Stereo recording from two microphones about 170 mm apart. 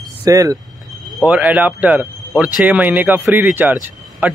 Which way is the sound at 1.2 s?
10° right (ahead or behind).